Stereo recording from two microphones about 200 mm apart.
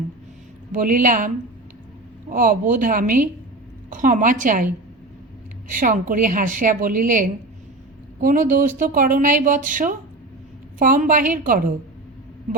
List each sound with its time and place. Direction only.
0.7 s speech: 45° right (ahead or behind)
2.3 s a woman's voice: 45° right (ahead or behind)